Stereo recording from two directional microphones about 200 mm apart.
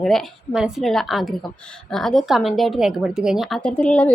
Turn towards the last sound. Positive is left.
turn(degrees=5)  # may be behind; listen again after turning